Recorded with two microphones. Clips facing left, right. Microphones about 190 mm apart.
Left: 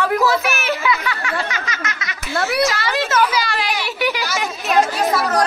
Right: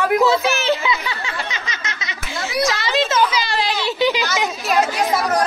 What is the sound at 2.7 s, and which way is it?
A child's voice, 20° right (ahead or behind).